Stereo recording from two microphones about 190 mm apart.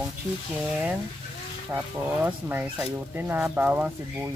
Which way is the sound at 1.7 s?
10° right (ahead or behind).